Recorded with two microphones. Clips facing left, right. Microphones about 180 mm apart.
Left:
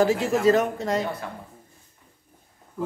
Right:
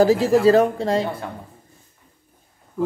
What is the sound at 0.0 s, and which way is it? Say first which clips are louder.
Speech: right 5 dB; 35° right (ahead or behind).